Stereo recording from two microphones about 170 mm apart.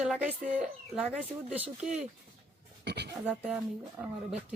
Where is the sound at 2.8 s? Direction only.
80° right.